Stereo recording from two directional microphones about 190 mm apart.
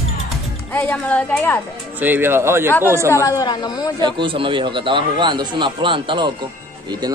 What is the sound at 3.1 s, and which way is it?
Speech, 15° left (ahead or behind).